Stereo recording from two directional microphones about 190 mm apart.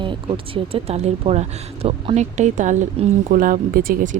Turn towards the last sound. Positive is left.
turn(degrees=-45)  # may be behind; listen again after turning